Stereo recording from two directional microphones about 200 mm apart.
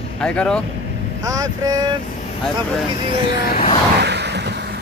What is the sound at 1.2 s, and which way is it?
Speech, 15° right (ahead or behind).